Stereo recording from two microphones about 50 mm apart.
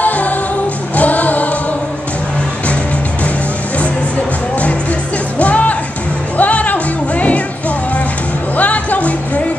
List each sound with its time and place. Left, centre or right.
0.0 s music: left
5.4 s music: left
8.5 s music: left